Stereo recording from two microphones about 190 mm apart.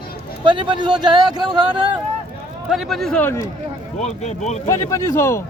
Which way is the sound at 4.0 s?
35° left (ahead or behind).